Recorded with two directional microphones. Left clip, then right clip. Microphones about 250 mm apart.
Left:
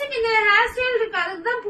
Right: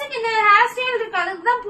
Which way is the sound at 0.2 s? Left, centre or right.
Centre.